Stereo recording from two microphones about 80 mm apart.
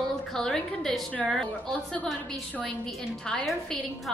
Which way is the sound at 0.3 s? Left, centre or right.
Centre.